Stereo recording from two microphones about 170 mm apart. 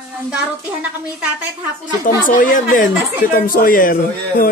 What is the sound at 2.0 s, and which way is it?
A woman's voice, 50° left (ahead or behind).